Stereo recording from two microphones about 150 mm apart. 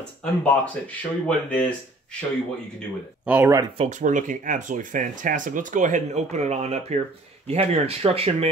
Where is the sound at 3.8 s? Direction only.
55° right (ahead or behind).